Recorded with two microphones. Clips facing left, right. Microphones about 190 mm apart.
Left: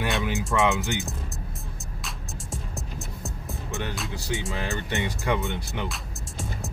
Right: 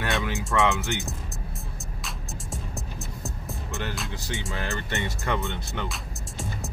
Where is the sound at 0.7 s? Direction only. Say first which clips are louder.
Left 1 dB; 15° left (ahead or behind).